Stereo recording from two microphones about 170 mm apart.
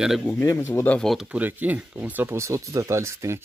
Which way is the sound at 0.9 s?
Centre (ahead or behind).